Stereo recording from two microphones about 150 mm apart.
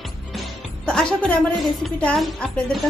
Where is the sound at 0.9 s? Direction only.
5° left (ahead or behind).